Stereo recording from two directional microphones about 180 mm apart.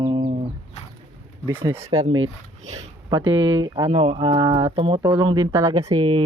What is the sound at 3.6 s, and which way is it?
Speech, 25° right (ahead or behind).